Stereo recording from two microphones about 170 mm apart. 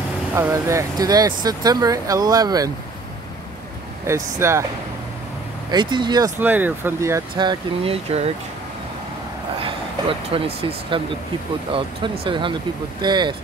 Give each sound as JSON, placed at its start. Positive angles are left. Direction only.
{"t": 0.4, "sound": "speech", "side_deg": -15}
{"t": 4.1, "sound": "speech", "side_deg": -15}
{"t": 5.7, "sound": "speech", "side_deg": -25}
{"t": 6.4, "sound": "speech", "side_deg": -10}
{"t": 9.6, "sound": "speech", "side_deg": -30}